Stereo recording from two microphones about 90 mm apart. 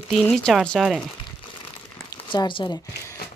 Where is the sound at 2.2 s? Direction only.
65° left (ahead or behind).